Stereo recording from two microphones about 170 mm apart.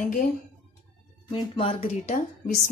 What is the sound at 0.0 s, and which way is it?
Speech, 50° left (ahead or behind).